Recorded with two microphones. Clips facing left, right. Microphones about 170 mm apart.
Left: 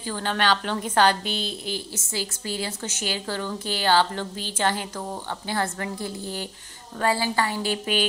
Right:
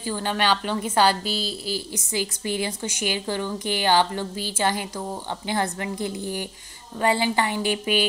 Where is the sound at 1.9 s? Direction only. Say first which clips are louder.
Right 4 dB; 15° right (ahead or behind).